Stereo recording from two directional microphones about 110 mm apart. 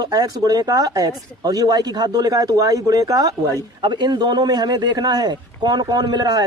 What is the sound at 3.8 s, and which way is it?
Speech, 45° right (ahead or behind).